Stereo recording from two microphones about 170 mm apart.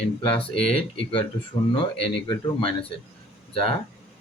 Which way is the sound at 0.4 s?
35° left (ahead or behind).